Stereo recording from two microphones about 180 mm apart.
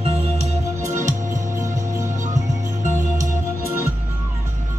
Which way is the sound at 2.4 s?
15° right (ahead or behind).